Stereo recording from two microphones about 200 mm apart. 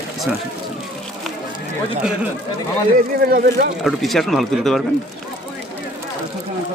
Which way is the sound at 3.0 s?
45° right (ahead or behind).